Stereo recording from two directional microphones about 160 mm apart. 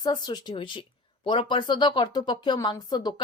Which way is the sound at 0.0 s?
25° left (ahead or behind).